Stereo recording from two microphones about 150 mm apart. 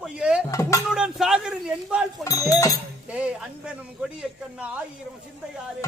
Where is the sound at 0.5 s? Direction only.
20° left (ahead or behind).